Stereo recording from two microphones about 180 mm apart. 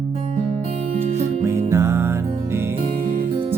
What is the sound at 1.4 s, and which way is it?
Music, 15° right (ahead or behind).